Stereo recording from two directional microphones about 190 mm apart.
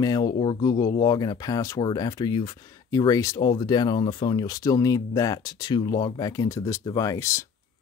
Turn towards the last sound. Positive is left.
turn(degrees=15)  # may be behind; listen again after turning